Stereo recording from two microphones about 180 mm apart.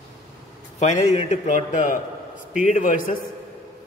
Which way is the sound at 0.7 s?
40° left (ahead or behind).